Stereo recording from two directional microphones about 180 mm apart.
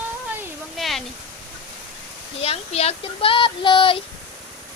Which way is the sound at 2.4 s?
35° left (ahead or behind).